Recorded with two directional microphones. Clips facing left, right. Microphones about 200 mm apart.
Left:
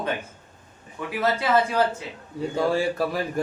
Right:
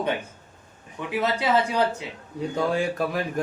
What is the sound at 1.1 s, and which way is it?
Speech, 20° right (ahead or behind).